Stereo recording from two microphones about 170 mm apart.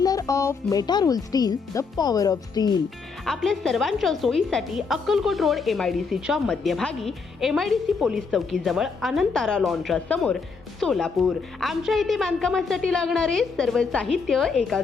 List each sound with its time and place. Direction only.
0.0 s speech: 20° left (ahead or behind)
3.2 s a woman's voice: centre (ahead or behind)